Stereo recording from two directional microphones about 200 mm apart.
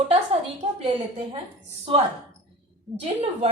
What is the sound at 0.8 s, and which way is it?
Speech, 30° right (ahead or behind).